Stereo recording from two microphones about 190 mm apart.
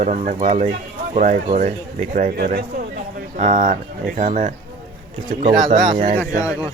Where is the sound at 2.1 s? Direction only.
50° right (ahead or behind).